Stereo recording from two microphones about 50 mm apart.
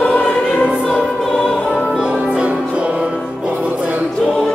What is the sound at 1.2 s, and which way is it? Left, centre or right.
Music, centre.